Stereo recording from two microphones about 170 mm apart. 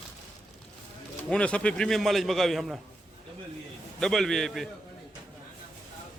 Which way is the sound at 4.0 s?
Centre (ahead or behind).